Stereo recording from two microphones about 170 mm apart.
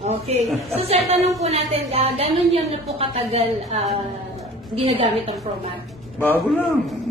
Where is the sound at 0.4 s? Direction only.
Centre (ahead or behind).